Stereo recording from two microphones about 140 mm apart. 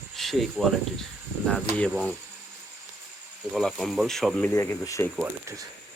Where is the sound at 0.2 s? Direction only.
Centre (ahead or behind).